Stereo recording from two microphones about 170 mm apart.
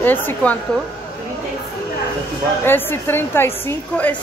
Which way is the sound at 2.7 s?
15° left (ahead or behind).